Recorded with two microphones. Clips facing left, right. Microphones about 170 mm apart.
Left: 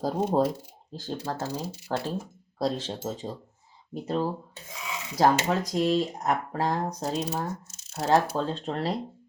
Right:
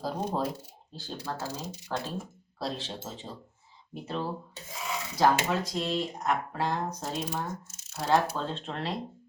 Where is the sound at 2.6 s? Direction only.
45° left (ahead or behind).